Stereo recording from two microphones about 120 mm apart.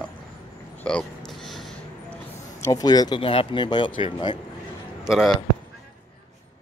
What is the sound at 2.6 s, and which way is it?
Speech, 30° left (ahead or behind).